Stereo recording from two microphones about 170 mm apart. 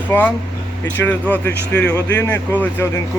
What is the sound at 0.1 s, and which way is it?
Speech, 10° left (ahead or behind).